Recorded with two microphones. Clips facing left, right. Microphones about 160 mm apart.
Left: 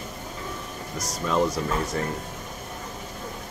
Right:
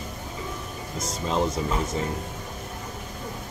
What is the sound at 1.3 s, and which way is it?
Speech, 20° right (ahead or behind).